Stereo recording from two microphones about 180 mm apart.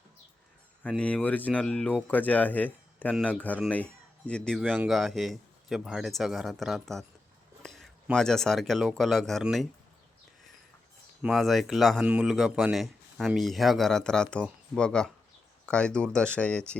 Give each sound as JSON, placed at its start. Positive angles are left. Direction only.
{"t": 0.8, "sound": "speech", "side_deg": 5}
{"t": 11.2, "sound": "speech", "side_deg": 0}